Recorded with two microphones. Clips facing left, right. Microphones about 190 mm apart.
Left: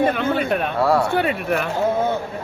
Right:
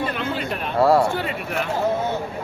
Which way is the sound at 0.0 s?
55° left (ahead or behind).